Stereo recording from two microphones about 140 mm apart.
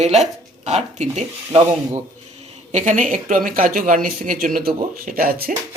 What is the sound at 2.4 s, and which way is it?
Speech, 60° right (ahead or behind).